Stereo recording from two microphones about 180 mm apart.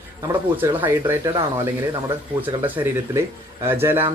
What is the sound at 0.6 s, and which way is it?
Speech, 15° right (ahead or behind).